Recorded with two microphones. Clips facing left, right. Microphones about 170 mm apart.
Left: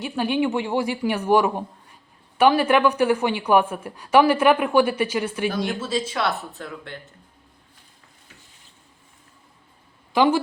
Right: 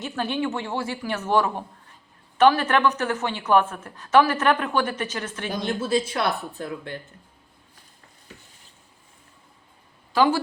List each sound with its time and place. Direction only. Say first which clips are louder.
0.0 s a woman's voice: left 4 dB; 15° left (ahead or behind)
6.1 s speech: even; 15° right (ahead or behind)
10.1 s speech: left 2 dB; 20° left (ahead or behind)